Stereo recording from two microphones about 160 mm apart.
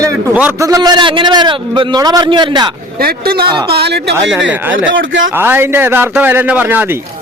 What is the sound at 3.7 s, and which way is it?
Speech, 90° right.